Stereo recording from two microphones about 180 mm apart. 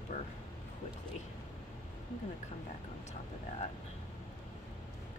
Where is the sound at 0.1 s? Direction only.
40° left (ahead or behind).